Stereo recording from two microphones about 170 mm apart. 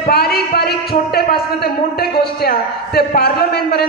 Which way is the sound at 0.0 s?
65° left (ahead or behind).